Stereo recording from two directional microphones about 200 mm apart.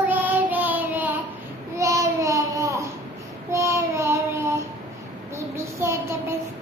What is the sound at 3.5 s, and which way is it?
Child singing, 15° right (ahead or behind).